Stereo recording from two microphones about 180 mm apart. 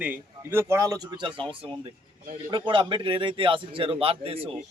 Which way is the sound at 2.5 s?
25° right (ahead or behind).